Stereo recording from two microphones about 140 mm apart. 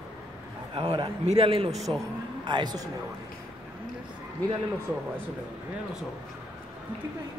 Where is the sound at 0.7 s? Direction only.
40° right (ahead or behind).